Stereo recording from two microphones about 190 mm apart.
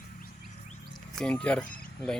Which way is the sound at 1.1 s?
5° left (ahead or behind).